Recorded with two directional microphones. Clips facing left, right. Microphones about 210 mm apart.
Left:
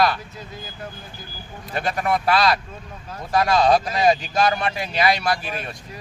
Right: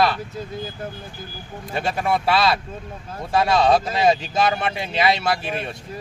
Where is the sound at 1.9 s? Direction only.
5° right (ahead or behind).